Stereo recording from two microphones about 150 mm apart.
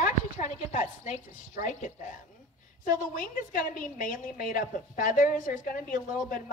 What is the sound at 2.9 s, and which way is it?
A woman's voice, 65° left (ahead or behind).